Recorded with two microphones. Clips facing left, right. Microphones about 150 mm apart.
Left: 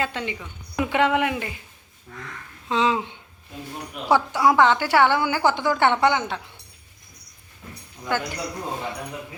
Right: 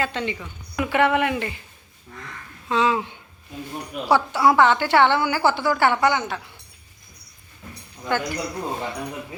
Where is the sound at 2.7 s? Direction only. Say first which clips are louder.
Right 1 dB; 20° left (ahead or behind).